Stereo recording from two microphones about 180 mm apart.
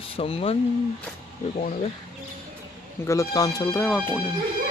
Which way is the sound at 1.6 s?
45° left (ahead or behind).